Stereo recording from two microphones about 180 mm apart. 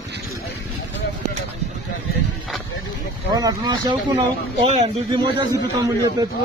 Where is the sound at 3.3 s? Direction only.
20° right (ahead or behind).